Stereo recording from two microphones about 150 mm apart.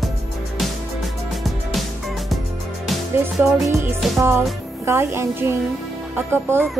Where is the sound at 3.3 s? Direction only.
Centre (ahead or behind).